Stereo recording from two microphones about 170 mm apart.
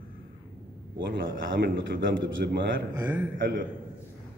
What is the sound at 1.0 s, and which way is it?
A man's voice, 90° right.